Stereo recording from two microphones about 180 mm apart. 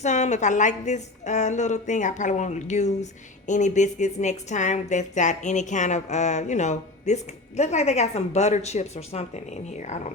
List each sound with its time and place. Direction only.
0.0 s a woman's voice: 40° left (ahead or behind)